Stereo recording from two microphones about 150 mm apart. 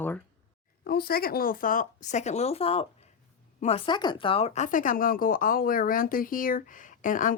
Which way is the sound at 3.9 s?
30° left (ahead or behind).